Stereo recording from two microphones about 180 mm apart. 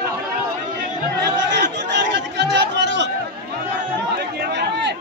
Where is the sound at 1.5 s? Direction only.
75° right (ahead or behind).